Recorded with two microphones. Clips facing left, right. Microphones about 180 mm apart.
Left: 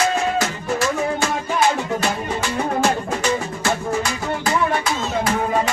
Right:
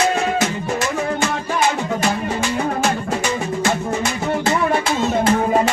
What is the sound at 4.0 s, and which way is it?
Music, 25° right (ahead or behind).